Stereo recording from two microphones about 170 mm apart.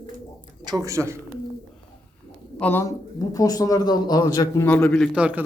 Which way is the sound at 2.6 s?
10° left (ahead or behind).